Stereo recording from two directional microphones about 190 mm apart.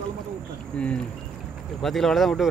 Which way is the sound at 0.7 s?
5° left (ahead or behind).